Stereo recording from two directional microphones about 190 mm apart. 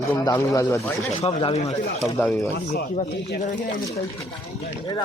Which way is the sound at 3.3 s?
40° left (ahead or behind).